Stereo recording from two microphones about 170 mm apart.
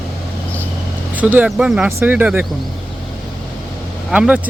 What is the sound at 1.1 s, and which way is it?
Speech, 10° right (ahead or behind).